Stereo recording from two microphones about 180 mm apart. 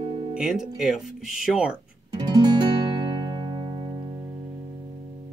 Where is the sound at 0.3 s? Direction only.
5° right (ahead or behind).